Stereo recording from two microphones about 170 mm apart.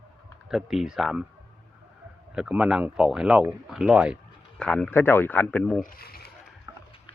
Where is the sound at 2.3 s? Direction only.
5° right (ahead or behind).